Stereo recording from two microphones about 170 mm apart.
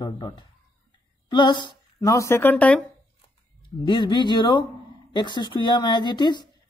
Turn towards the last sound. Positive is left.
turn(degrees=25)  # may be behind; listen again after turning